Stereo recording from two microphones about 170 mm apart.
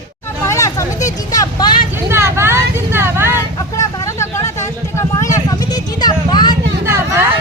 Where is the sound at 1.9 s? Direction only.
15° right (ahead or behind).